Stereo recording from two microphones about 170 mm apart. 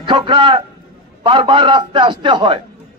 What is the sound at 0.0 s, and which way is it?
A man's voice, 30° right (ahead or behind).